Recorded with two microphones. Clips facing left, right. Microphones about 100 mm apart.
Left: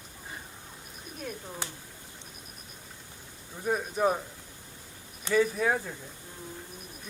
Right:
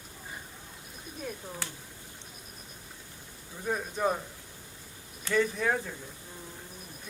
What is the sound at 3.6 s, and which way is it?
Speech, 10° left (ahead or behind).